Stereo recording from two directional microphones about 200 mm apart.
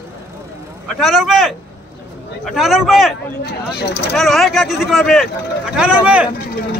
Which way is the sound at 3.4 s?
55° left (ahead or behind).